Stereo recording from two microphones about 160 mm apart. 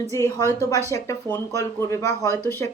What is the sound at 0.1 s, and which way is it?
Speech, 20° left (ahead or behind).